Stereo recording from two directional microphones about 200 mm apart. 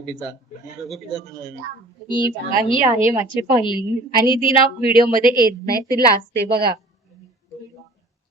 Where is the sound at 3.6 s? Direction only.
20° left (ahead or behind).